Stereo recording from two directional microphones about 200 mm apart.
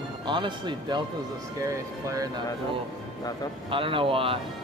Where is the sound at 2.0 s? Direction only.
15° right (ahead or behind).